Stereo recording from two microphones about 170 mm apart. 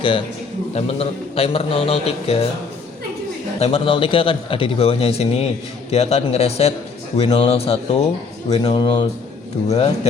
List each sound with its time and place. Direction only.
0.7 s speech: 35° left (ahead or behind)
3.6 s speech: 35° left (ahead or behind)